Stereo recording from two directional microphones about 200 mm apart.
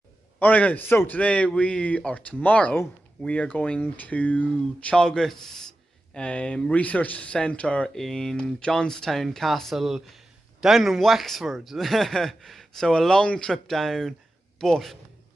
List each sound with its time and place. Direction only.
0.4 s a man's voice: 5° left (ahead or behind)